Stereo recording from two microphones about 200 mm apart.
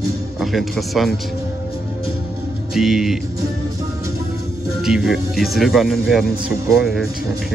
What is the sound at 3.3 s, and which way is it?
Music, 15° right (ahead or behind).